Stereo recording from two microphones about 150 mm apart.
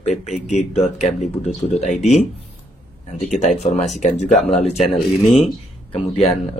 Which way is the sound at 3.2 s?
55° left (ahead or behind).